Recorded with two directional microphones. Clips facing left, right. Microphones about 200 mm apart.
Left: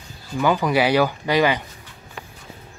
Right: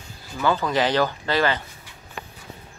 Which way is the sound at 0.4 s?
15° left (ahead or behind).